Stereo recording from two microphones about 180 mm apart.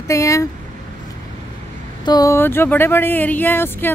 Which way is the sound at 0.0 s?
15° left (ahead or behind).